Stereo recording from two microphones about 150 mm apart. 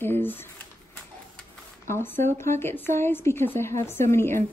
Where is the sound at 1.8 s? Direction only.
15° left (ahead or behind).